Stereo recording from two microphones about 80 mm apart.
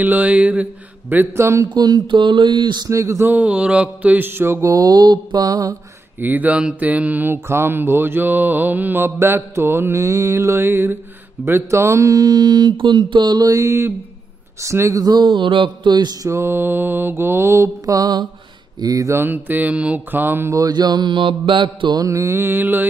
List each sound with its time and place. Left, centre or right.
0.0 s mantra: right
1.7 s speech: right
2.9 s mantra: right
3.3 s mantra: centre
4.6 s mantra: right
6.1 s mantra: right
7.3 s mantra: right
13.5 s mantra: right
15.1 s speech: right
16.3 s mantra: right
19.0 s mantra: right
20.5 s mantra: right
22.0 s mantra: right